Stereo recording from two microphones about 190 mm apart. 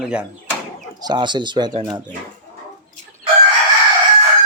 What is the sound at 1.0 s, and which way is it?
Speech, 25° right (ahead or behind).